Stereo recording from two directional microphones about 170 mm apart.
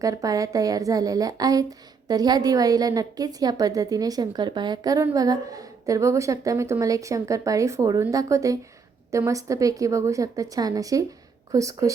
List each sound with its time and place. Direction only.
0.0 s a woman's voice: 20° right (ahead or behind)